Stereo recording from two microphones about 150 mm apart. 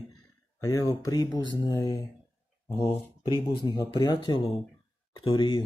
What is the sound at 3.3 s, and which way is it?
Speech, 30° left (ahead or behind).